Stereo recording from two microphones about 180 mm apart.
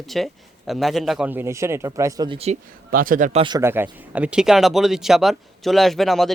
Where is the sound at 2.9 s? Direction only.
50° right (ahead or behind).